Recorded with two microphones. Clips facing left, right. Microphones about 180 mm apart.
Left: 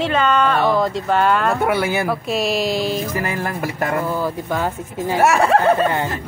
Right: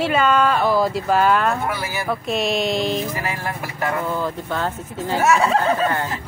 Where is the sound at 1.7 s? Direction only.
65° left (ahead or behind).